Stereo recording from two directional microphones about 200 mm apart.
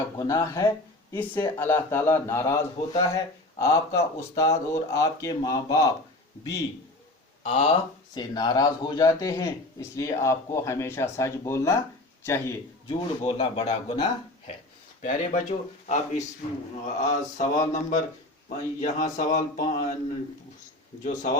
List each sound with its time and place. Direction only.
0.2 s speech: 15° left (ahead or behind)
7.4 s speech: 30° left (ahead or behind); by 12.5 s 15° left (ahead or behind)
12.9 s speech: 30° left (ahead or behind)
15.0 s mantra: 40° left (ahead or behind)
21.0 s mantra: 40° left (ahead or behind)